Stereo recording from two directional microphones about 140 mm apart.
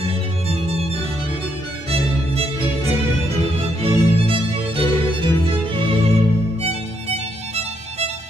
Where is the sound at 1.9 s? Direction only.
45° right (ahead or behind).